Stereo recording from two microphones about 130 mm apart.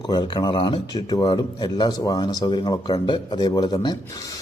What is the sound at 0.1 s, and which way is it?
A man's voice, 35° left (ahead or behind).